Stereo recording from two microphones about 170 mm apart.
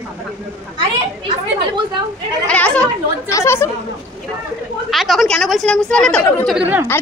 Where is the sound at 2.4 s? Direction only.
5° left (ahead or behind).